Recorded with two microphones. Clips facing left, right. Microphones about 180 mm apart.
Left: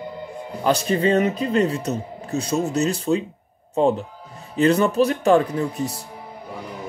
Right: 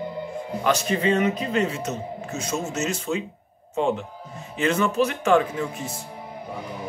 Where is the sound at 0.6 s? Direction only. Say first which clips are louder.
Left 3 dB; 35° left (ahead or behind).